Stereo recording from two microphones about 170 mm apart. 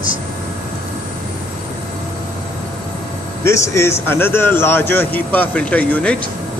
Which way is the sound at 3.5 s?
15° left (ahead or behind).